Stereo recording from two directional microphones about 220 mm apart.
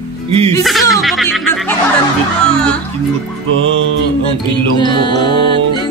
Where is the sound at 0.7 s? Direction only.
Centre (ahead or behind).